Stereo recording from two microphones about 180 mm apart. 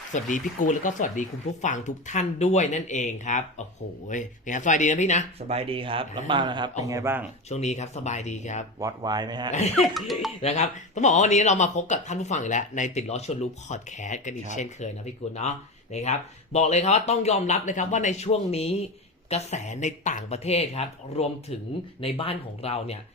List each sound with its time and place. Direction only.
0.1 s speech: 45° left (ahead or behind)
5.5 s speech: 30° right (ahead or behind); by 7.3 s 15° right (ahead or behind)
7.5 s speech: 40° left (ahead or behind)
8.8 s speech: 20° right (ahead or behind)
9.8 s speech: centre (ahead or behind)
10.4 s speech: 40° left (ahead or behind)